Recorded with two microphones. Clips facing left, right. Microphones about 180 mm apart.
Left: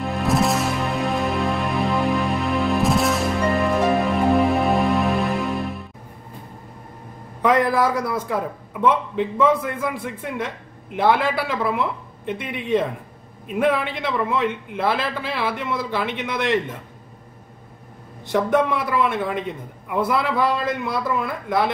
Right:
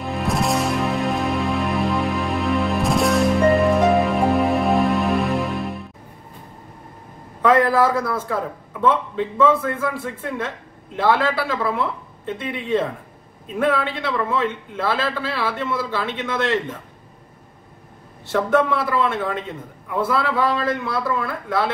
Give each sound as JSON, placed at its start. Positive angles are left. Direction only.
{"t": 0.0, "sound": "music", "side_deg": 0}
{"t": 7.4, "sound": "a man's voice", "side_deg": 15}
{"t": 18.2, "sound": "a man's voice", "side_deg": 15}